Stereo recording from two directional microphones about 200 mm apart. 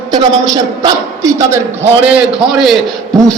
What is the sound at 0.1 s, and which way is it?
A man's voice, 20° right (ahead or behind).